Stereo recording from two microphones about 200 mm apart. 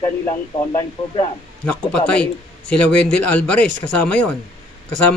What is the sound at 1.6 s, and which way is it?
A man's voice, 5° left (ahead or behind).